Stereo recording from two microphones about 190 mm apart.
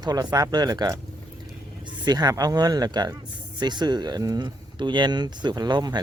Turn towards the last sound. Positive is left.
turn(degrees=-20)  # may be behind; listen again after turning